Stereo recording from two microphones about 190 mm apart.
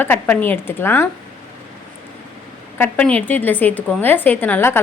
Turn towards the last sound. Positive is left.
turn(degrees=10)  # may be behind; listen again after turning